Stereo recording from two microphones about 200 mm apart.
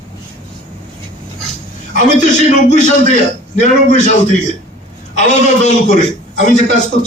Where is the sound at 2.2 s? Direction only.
35° left (ahead or behind).